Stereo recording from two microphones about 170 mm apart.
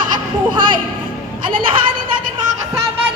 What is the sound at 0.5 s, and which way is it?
Speech, 30° right (ahead or behind).